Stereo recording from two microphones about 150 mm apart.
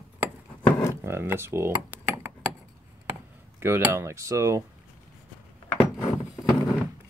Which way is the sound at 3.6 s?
15° right (ahead or behind).